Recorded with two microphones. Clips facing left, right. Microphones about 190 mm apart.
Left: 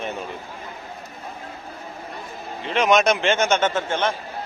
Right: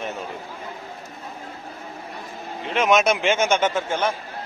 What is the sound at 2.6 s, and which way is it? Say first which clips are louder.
A man's voice: left 1 dB; 5° right (ahead or behind).